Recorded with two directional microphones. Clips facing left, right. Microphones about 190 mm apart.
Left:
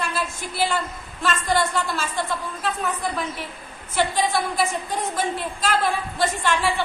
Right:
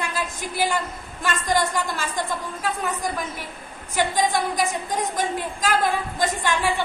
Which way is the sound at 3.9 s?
15° right (ahead or behind).